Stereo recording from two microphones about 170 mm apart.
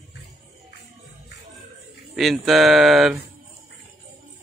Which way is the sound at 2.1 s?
Centre (ahead or behind).